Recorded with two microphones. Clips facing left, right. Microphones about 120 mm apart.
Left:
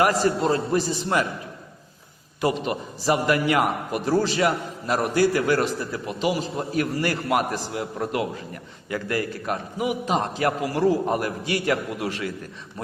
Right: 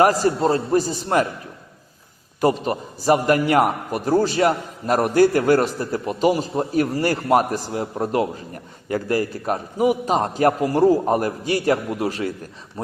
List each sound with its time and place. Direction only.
0.0 s a man's voice: 40° right (ahead or behind)
2.4 s a man's voice: 40° right (ahead or behind)